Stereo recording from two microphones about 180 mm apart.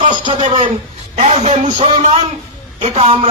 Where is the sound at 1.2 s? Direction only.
35° right (ahead or behind).